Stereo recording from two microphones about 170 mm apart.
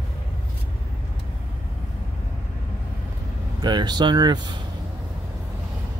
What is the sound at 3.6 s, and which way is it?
Speech, 25° right (ahead or behind).